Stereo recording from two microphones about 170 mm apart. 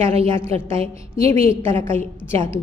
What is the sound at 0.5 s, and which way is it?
Speech, 35° right (ahead or behind).